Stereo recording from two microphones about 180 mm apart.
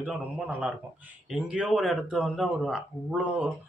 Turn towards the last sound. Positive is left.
turn(degrees=-5)  # may be behind; listen again after turning